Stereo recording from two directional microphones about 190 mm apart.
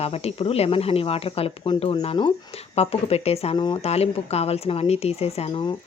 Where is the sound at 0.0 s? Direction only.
30° left (ahead or behind).